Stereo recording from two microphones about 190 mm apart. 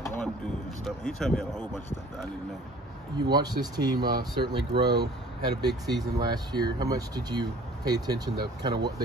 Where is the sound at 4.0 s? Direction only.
55° right (ahead or behind).